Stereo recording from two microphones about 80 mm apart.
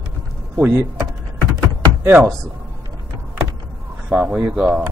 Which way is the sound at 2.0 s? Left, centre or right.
Right.